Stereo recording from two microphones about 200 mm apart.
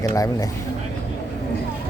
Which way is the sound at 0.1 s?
15° left (ahead or behind).